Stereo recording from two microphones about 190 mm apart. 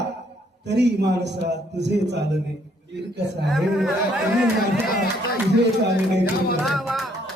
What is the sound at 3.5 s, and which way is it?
Speech, centre (ahead or behind).